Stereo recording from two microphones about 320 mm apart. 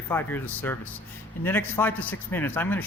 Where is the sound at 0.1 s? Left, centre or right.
Centre.